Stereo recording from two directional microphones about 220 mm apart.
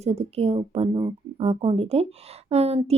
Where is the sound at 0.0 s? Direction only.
30° right (ahead or behind).